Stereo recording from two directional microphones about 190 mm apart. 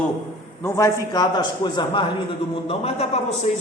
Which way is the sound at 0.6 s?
15° left (ahead or behind).